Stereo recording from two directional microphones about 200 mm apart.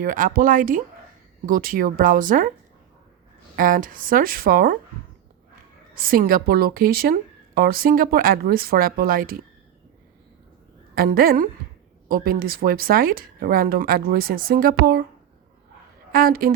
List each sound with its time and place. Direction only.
0.0 s a woman's voice: 45° right (ahead or behind)
3.5 s a woman's voice: 45° right (ahead or behind)
5.9 s a woman's voice: 45° right (ahead or behind)
10.9 s a woman's voice: 45° right (ahead or behind)
16.1 s a woman's voice: 45° right (ahead or behind)